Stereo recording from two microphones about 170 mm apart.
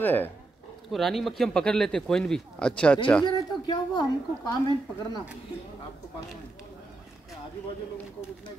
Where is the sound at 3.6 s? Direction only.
25° left (ahead or behind).